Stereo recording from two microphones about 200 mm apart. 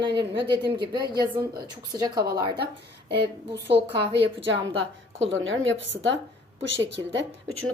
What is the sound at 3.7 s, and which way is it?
Speech, 55° right (ahead or behind).